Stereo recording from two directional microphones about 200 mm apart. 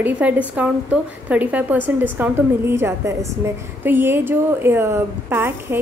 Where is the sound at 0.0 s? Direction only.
10° right (ahead or behind).